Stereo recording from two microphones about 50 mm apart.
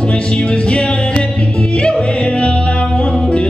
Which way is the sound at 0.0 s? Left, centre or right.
Left.